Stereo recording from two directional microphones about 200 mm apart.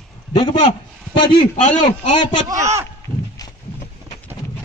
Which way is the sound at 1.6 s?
40° left (ahead or behind).